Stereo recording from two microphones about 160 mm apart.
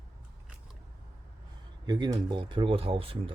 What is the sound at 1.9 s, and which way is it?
Speech, 30° right (ahead or behind).